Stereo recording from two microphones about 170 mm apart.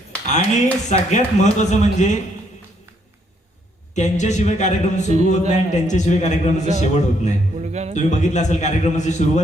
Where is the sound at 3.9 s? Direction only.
45° left (ahead or behind).